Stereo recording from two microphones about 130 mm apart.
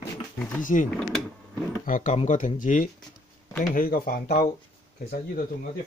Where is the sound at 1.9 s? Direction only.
90° left.